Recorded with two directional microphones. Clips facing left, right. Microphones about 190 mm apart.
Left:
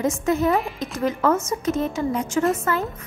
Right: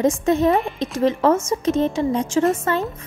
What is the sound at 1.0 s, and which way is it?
A woman's voice, 30° right (ahead or behind).